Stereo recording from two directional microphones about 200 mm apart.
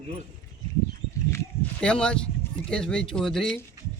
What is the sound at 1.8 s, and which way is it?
Speech, 5° left (ahead or behind).